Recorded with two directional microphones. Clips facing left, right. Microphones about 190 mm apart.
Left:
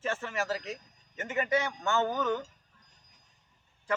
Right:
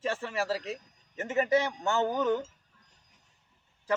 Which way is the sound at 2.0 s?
20° right (ahead or behind).